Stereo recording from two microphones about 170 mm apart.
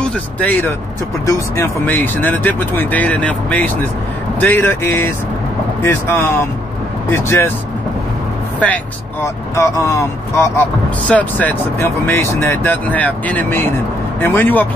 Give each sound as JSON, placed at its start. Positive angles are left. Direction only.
{"t": 0.0, "sound": "speech", "side_deg": 10}
{"t": 9.8, "sound": "speech", "side_deg": 15}